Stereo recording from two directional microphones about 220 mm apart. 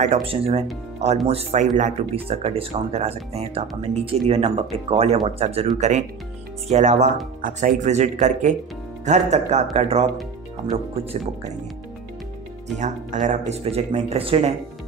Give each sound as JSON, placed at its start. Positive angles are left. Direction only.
{"t": 0.0, "sound": "speech", "side_deg": -25}
{"t": 12.7, "sound": "speech", "side_deg": -35}